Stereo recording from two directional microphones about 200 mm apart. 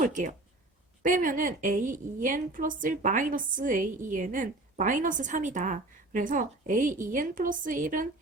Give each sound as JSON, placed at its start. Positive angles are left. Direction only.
{"t": 0.0, "sound": "a woman's voice", "side_deg": -40}